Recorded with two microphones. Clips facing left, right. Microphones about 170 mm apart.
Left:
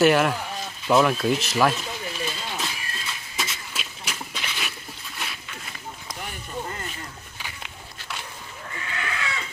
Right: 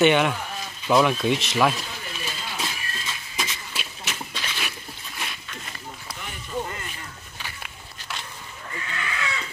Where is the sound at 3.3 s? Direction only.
5° left (ahead or behind).